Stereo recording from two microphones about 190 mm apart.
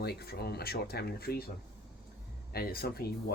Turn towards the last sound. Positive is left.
turn(degrees=55)  # may be behind; listen again after turning